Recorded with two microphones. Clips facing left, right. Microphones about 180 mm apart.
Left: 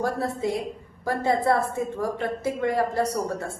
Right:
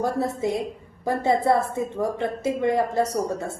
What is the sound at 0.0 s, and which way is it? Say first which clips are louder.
A woman's voice: right 2 dB; 20° right (ahead or behind).